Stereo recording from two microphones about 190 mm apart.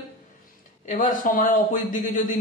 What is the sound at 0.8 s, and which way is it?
Speech, 45° left (ahead or behind).